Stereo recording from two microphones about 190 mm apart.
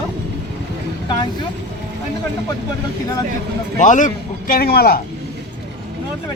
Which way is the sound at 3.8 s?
40° left (ahead or behind).